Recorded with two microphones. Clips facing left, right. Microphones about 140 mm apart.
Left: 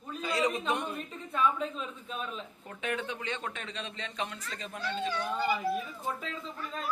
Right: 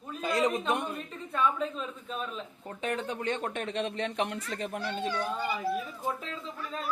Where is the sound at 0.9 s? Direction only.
Centre (ahead or behind).